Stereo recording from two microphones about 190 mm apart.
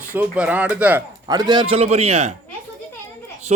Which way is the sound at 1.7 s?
35° right (ahead or behind).